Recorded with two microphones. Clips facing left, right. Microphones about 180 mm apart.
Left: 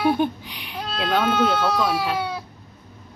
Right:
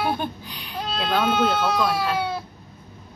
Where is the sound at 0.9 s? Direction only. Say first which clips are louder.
Left 1 dB; 5° left (ahead or behind).